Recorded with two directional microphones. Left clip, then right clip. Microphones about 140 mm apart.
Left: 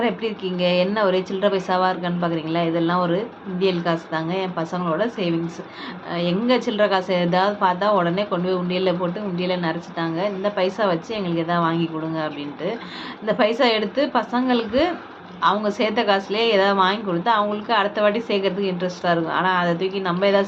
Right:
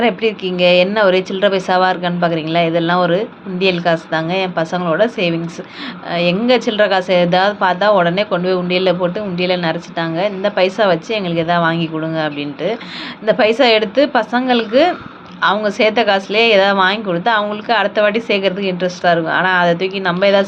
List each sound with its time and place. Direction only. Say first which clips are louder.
0.0 s a woman's voice: right 8 dB; 30° right (ahead or behind)